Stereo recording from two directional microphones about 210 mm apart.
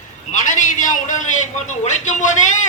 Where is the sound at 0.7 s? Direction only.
40° left (ahead or behind).